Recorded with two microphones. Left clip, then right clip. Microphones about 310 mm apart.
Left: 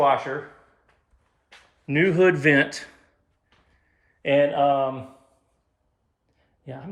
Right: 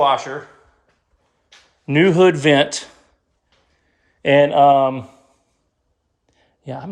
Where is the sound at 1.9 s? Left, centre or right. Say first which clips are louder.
Right 6 dB; centre.